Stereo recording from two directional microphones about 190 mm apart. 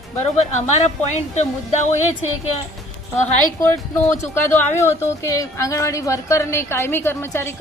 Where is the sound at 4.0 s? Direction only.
35° left (ahead or behind).